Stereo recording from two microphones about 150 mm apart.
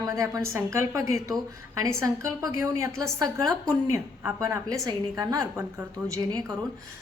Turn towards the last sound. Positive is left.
turn(degrees=-25)  # may be behind; listen again after turning